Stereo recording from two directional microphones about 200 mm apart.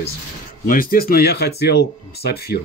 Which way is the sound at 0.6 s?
45° left (ahead or behind).